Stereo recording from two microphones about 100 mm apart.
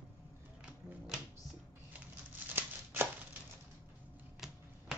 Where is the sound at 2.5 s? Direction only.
20° right (ahead or behind).